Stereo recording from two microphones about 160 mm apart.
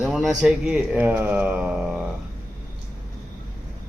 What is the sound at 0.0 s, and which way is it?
Speech, 5° right (ahead or behind).